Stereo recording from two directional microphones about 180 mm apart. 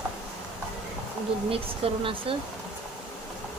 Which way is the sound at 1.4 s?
30° right (ahead or behind).